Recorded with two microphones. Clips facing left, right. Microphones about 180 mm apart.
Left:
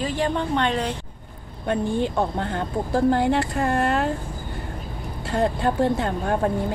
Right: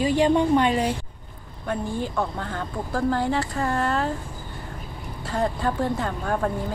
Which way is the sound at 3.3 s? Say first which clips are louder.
Left 3 dB; 60° left (ahead or behind).